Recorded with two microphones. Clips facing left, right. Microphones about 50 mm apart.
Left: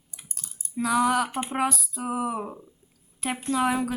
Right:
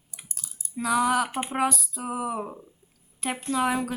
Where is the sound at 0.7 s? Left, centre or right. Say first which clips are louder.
Left 1 dB; centre.